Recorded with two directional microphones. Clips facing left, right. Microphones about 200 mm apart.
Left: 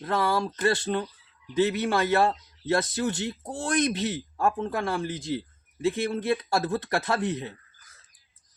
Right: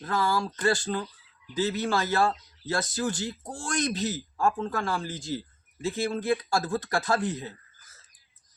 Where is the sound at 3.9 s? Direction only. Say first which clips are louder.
Left 1 dB; 60° left (ahead or behind).